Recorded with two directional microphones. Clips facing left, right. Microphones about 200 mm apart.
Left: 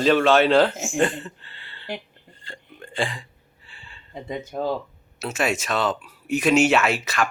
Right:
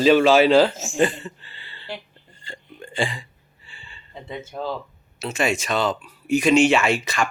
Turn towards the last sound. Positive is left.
turn(degrees=0)  # may be behind; listen again after turning